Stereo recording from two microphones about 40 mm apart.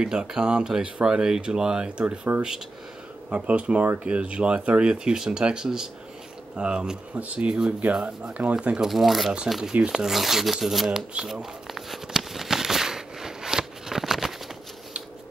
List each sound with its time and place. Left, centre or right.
0.0 s speech: centre
2.3 s speech: right
3.3 s speech: right
8.8 s speech: centre
11.7 s a sound: centre